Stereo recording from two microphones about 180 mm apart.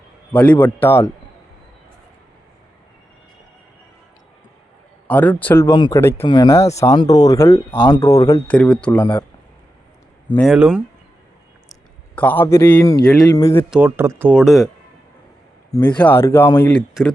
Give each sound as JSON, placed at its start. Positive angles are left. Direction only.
{"t": 0.3, "sound": "speech", "side_deg": 10}
{"t": 5.0, "sound": "speech", "side_deg": 10}
{"t": 5.7, "sound": "speech", "side_deg": 25}
{"t": 6.0, "sound": "speech", "side_deg": 15}
{"t": 6.2, "sound": "speech", "side_deg": 25}
{"t": 8.4, "sound": "speech", "side_deg": 5}
{"t": 10.5, "sound": "speech", "side_deg": -5}
{"t": 11.7, "sound": "a man's voice", "side_deg": 10}
{"t": 13.7, "sound": "speech", "side_deg": -10}
{"t": 16.0, "sound": "speech", "side_deg": 10}